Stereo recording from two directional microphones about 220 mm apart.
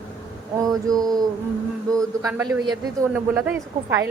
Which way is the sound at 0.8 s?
15° right (ahead or behind).